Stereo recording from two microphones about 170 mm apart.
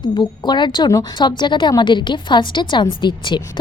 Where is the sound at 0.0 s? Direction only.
25° left (ahead or behind).